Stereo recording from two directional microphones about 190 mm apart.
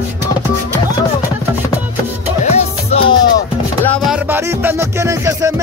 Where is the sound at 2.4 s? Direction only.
30° left (ahead or behind).